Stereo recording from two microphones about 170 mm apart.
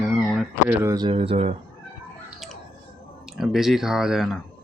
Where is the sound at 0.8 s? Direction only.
20° right (ahead or behind).